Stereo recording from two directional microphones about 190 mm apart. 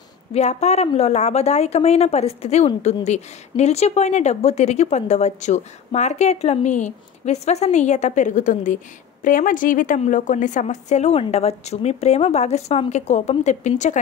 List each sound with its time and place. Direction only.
0.3 s a woman's voice: 35° left (ahead or behind)